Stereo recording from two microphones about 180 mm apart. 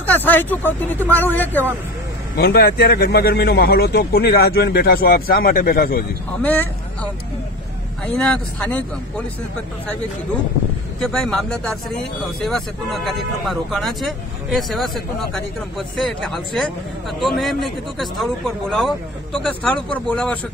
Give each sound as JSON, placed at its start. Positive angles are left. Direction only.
{"t": 0.0, "sound": "speech", "side_deg": 10}
{"t": 2.3, "sound": "speech", "side_deg": 65}
{"t": 6.4, "sound": "speech", "side_deg": 10}
{"t": 8.1, "sound": "speech", "side_deg": 5}
{"t": 11.0, "sound": "speech", "side_deg": 5}